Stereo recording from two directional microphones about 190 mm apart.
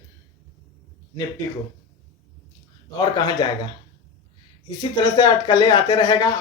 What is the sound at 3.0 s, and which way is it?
Speech, 25° left (ahead or behind).